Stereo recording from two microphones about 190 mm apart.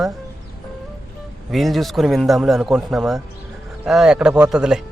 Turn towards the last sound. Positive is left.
turn(degrees=-5)  # may be behind; listen again after turning